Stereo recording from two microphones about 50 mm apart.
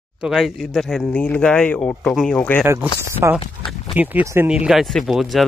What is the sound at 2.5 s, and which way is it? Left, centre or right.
Speech, left.